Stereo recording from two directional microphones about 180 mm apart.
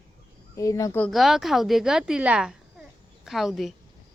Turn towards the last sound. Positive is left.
turn(degrees=0)  # may be behind; listen again after turning